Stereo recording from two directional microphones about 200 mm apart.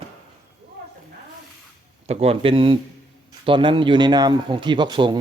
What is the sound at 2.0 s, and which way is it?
A man's voice, 30° right (ahead or behind).